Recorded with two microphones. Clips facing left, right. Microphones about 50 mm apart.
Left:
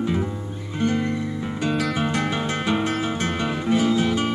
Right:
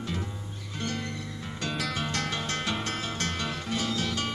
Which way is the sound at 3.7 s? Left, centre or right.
Left.